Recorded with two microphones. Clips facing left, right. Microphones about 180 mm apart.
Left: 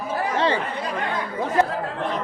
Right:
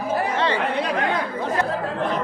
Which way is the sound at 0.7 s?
70° right (ahead or behind).